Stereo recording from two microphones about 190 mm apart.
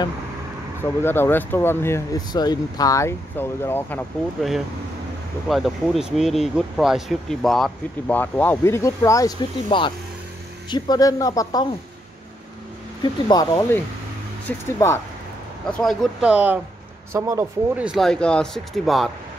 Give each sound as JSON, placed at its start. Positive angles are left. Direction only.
{"t": 1.0, "sound": "speech", "side_deg": 10}
{"t": 4.4, "sound": "speech", "side_deg": 0}
{"t": 13.0, "sound": "speech", "side_deg": 20}
{"t": 14.5, "sound": "speech", "side_deg": 10}
{"t": 15.7, "sound": "speech", "side_deg": 0}